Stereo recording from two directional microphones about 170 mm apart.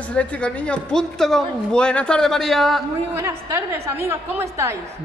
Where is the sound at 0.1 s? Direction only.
5° left (ahead or behind).